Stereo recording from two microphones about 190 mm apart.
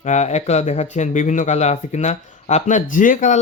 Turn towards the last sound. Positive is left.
turn(degrees=40)  # may be behind; listen again after turning